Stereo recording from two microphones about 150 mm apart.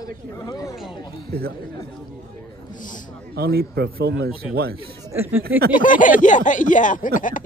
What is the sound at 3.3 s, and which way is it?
A man's voice, 90° right.